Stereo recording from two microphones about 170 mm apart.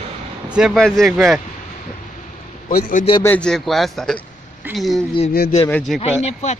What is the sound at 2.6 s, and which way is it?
Speech, 55° left (ahead or behind).